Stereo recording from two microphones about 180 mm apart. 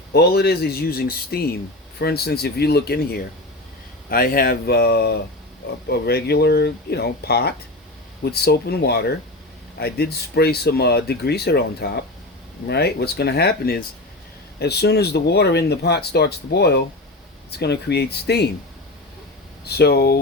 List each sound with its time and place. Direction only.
0.1 s speech: 60° left (ahead or behind)
19.6 s speech: 65° left (ahead or behind)